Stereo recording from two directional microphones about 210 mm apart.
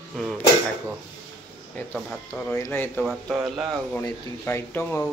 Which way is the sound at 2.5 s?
10° left (ahead or behind).